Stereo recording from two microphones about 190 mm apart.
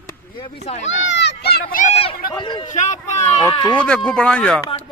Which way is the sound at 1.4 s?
55° left (ahead or behind).